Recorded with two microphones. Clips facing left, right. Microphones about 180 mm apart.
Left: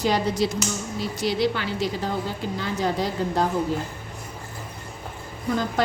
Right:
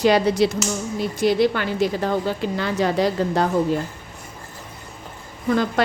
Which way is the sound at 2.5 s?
70° right (ahead or behind).